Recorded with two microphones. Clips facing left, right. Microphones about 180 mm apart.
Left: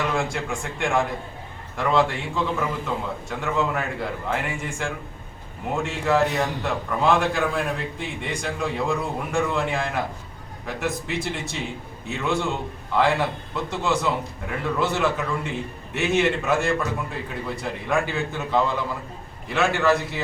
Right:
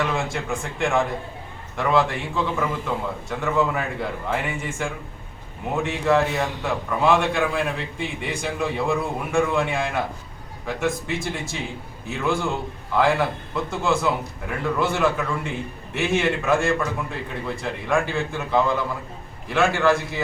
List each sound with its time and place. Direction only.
0.1 s a man's voice: centre (ahead or behind)